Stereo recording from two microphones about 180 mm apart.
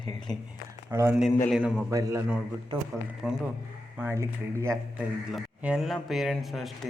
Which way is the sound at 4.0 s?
15° right (ahead or behind).